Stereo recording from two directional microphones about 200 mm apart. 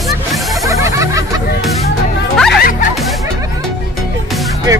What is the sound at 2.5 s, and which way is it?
Music, 45° left (ahead or behind).